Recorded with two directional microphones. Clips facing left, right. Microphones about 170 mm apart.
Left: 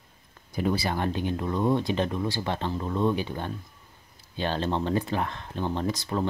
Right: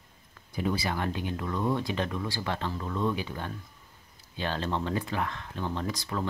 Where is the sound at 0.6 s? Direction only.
35° left (ahead or behind).